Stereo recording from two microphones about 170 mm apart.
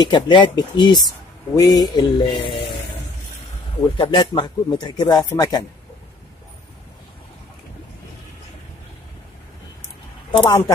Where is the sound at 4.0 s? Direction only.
30° left (ahead or behind).